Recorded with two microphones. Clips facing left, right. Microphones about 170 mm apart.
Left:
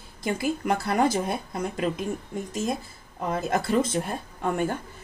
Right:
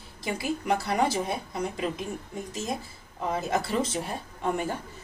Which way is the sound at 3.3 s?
55° left (ahead or behind).